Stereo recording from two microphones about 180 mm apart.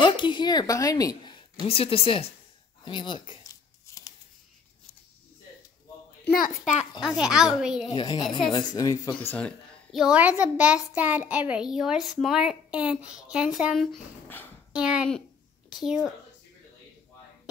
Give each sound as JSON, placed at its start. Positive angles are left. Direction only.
{"t": 0.0, "sound": "a woman's voice", "side_deg": 25}
{"t": 2.8, "sound": "shuffling cards", "side_deg": 25}
{"t": 6.2, "sound": "a sound", "side_deg": 55}
{"t": 7.0, "sound": "a child's voice", "side_deg": -5}
{"t": 7.9, "sound": "speech", "side_deg": 25}
{"t": 9.1, "sound": "a woman's voice", "side_deg": 10}